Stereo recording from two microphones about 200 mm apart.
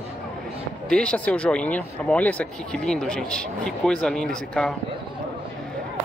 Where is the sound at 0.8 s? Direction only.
5° left (ahead or behind).